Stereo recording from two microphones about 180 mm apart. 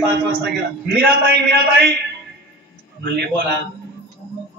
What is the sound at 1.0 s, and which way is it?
Speech, 60° right (ahead or behind).